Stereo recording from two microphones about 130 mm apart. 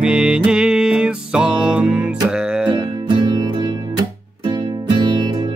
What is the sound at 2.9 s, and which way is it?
Music, 35° right (ahead or behind).